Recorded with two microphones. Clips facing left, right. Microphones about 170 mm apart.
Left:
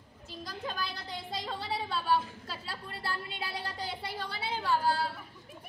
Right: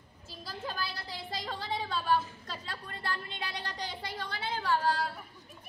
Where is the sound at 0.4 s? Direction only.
5° right (ahead or behind).